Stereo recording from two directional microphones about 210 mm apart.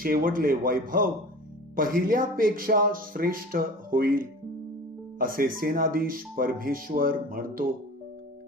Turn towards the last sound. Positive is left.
turn(degrees=-40)  # may be behind; listen again after turning